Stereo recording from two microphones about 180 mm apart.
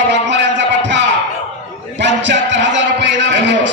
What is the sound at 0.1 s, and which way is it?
Music, 80° right.